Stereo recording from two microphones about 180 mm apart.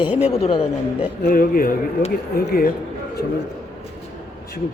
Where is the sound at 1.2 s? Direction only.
50° left (ahead or behind).